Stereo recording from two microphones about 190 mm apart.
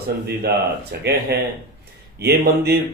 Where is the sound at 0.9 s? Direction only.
60° right (ahead or behind).